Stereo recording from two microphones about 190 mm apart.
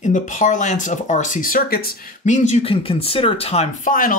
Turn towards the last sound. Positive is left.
turn(degrees=45)  # may be behind; listen again after turning